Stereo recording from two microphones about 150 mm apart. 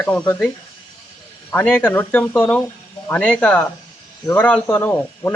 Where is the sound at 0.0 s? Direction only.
10° left (ahead or behind).